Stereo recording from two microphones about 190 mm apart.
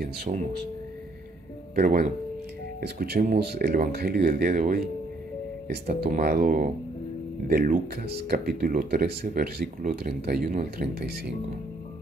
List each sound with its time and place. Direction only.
0.0 s speech: 55° right (ahead or behind)
1.8 s speech: 45° right (ahead or behind)